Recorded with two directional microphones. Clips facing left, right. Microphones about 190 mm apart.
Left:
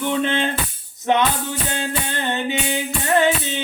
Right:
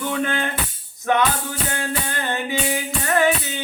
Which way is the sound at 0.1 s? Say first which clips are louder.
Left 4 dB; 20° left (ahead or behind).